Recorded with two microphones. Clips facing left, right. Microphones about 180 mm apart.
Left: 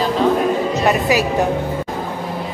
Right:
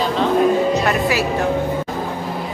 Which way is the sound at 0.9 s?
20° left (ahead or behind).